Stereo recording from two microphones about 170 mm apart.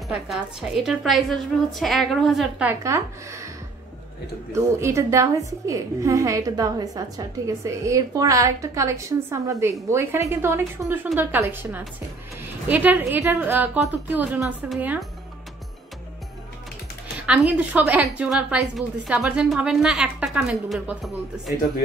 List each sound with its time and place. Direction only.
0.1 s a woman's voice: 5° right (ahead or behind)
2.7 s a woman's voice: 15° right (ahead or behind)
17.3 s a woman's voice: 10° right (ahead or behind)